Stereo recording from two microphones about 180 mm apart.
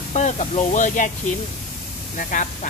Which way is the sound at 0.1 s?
40° left (ahead or behind).